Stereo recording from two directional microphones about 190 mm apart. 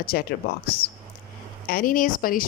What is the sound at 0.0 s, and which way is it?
Speech, 55° left (ahead or behind).